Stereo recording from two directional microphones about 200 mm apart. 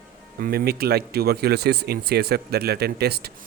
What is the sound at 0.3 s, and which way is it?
Speech, 45° right (ahead or behind).